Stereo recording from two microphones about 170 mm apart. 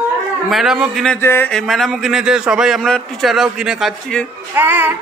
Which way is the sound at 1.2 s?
15° left (ahead or behind).